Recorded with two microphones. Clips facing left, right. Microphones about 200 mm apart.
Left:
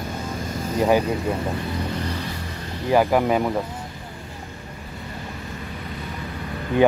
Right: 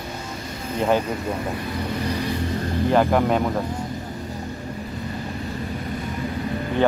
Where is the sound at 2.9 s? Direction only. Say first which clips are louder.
Left 1 dB; 5° left (ahead or behind).